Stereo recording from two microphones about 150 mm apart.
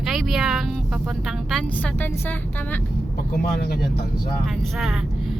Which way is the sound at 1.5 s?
5° left (ahead or behind).